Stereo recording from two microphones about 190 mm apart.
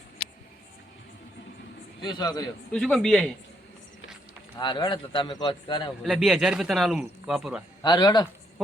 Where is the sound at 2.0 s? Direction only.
25° left (ahead or behind).